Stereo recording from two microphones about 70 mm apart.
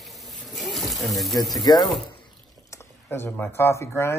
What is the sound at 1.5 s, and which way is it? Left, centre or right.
Speech, left.